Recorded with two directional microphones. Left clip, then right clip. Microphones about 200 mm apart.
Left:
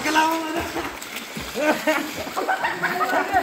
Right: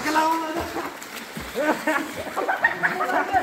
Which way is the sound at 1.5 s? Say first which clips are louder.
Left 2 dB; 45° left (ahead or behind).